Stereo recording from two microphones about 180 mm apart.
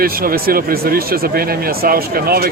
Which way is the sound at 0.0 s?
55° right (ahead or behind).